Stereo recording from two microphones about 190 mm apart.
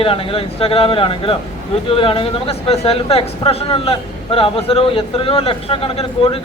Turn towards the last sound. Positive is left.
turn(degrees=30)  # may be behind; listen again after turning